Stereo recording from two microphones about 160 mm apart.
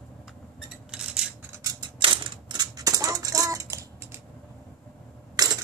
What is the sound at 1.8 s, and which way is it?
Coin, 30° right (ahead or behind).